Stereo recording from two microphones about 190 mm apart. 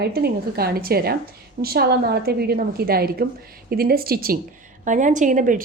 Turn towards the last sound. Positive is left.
turn(degrees=-45)  # may be behind; listen again after turning